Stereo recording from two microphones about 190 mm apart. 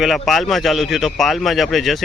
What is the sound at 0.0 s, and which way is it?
A man's voice, centre (ahead or behind).